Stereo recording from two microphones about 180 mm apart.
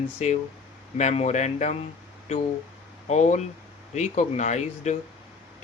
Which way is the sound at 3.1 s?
40° left (ahead or behind).